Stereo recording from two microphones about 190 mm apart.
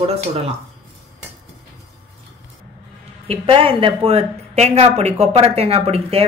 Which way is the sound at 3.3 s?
30° right (ahead or behind).